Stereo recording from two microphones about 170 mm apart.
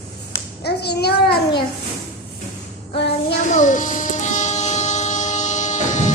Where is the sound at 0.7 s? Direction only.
70° left (ahead or behind).